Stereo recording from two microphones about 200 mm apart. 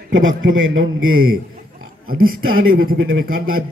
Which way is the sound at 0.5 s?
75° right (ahead or behind).